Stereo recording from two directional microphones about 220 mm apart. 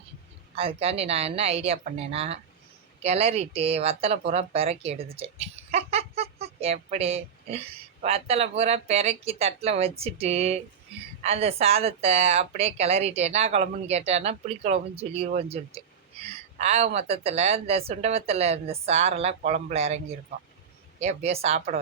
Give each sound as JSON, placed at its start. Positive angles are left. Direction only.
{"t": 0.5, "sound": "a woman's voice", "side_deg": -25}
{"t": 21.0, "sound": "a woman's voice", "side_deg": -30}